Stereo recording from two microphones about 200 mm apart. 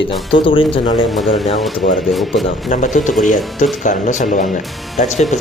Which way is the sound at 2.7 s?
40° left (ahead or behind).